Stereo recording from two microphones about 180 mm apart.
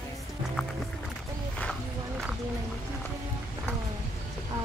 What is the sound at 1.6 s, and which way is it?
Music, 5° left (ahead or behind).